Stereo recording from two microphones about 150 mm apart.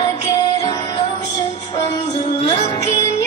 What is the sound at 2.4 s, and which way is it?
Music, 40° left (ahead or behind).